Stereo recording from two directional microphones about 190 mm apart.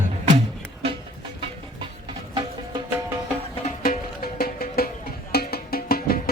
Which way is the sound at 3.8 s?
50° left (ahead or behind).